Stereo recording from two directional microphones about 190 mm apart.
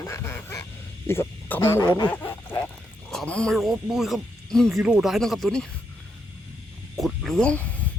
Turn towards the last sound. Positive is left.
turn(degrees=5)  # may be behind; listen again after turning